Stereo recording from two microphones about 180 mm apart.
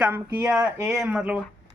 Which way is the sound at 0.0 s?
15° right (ahead or behind).